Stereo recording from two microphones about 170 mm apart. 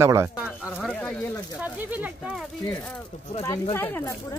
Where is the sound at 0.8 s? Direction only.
5° left (ahead or behind).